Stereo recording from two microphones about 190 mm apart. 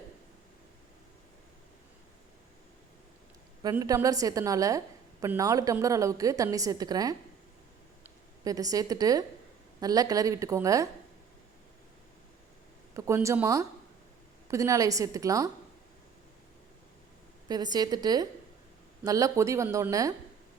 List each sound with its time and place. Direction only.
3.6 s a woman's voice: 20° right (ahead or behind)
8.4 s a woman's voice: 20° right (ahead or behind)
13.0 s a woman's voice: 15° right (ahead or behind)
17.5 s a woman's voice: 20° right (ahead or behind)